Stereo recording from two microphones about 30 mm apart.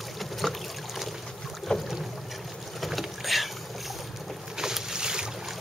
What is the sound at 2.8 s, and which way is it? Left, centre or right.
Boat, centre.